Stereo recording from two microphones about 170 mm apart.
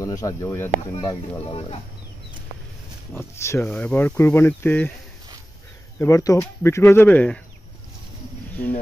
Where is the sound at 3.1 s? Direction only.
15° left (ahead or behind).